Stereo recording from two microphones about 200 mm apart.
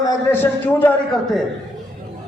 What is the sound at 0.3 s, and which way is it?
A man's voice, 10° left (ahead or behind).